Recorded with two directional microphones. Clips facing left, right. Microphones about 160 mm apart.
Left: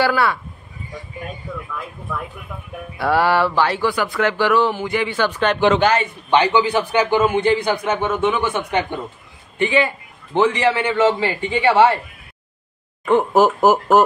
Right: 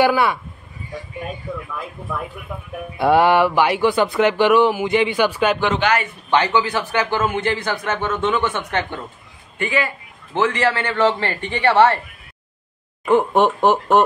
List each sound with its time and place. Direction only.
0.0 s speech: 15° right (ahead or behind)
3.0 s speech: 20° right (ahead or behind)
5.9 s speech: 15° left (ahead or behind)
9.6 s speech: 20° left (ahead or behind)
13.0 s speech: centre (ahead or behind)